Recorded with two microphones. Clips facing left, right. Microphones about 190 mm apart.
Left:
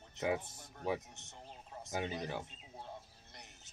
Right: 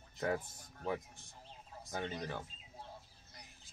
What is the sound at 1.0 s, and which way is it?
Speech, 75° left (ahead or behind).